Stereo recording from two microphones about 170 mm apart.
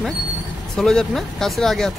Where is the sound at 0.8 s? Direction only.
5° left (ahead or behind).